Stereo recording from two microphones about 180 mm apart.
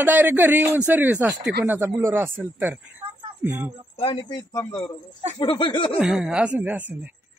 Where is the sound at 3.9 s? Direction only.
25° left (ahead or behind).